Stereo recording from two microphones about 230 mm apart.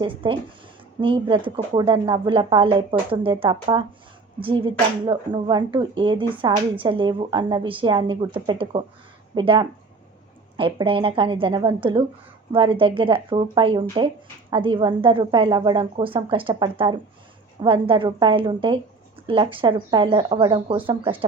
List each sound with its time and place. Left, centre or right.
0.0 s speech: right